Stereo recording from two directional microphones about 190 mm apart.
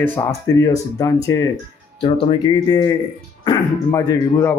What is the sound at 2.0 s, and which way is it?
Speech, 25° left (ahead or behind).